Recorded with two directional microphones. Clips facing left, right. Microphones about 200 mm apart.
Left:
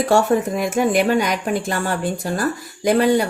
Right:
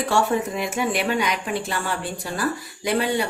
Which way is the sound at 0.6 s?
45° left (ahead or behind).